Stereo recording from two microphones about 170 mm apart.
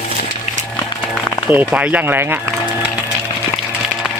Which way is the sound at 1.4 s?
10° right (ahead or behind).